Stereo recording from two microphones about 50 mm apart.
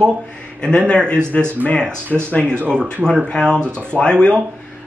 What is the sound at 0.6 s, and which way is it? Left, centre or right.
Speech, centre.